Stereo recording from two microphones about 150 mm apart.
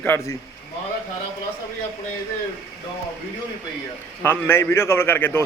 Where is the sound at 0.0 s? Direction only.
15° left (ahead or behind).